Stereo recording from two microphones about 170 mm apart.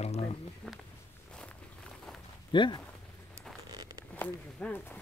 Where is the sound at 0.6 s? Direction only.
5° left (ahead or behind).